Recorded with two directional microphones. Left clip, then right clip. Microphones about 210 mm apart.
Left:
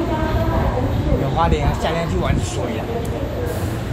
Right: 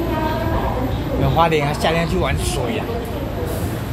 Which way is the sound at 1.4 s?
15° right (ahead or behind).